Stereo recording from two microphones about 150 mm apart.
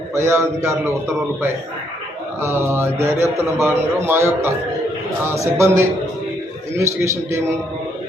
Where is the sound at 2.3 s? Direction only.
15° right (ahead or behind).